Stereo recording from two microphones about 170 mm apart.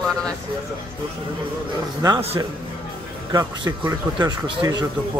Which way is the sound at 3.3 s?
20° right (ahead or behind).